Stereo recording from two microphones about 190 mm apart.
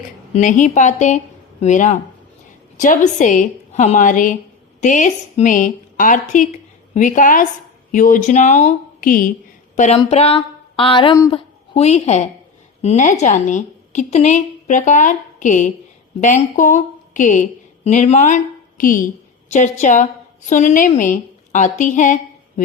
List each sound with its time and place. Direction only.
0.3 s a woman's voice: 40° left (ahead or behind)